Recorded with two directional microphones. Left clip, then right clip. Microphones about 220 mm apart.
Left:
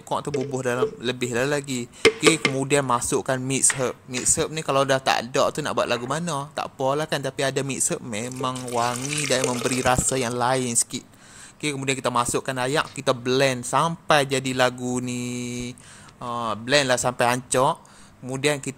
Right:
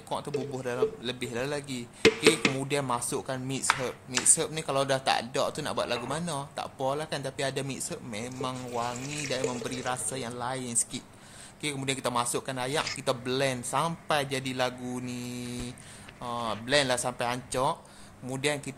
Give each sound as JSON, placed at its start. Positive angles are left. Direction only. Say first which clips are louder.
{"t": 0.1, "sound": "speech", "louder": "left 7 dB", "side_deg": 20}